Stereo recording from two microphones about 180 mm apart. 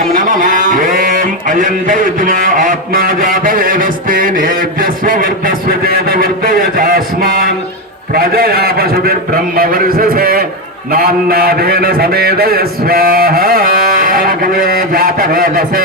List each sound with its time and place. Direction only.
0.1 s a man's voice: 50° right (ahead or behind)